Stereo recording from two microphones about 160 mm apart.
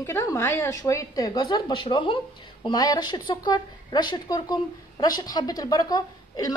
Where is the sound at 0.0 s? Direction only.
20° left (ahead or behind).